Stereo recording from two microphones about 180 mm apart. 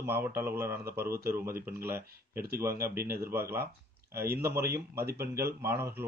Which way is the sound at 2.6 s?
15° right (ahead or behind).